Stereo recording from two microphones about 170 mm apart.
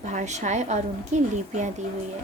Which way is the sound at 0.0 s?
45° right (ahead or behind).